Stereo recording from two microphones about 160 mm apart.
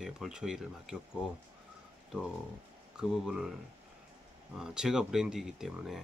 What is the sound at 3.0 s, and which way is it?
Speech, 5° right (ahead or behind).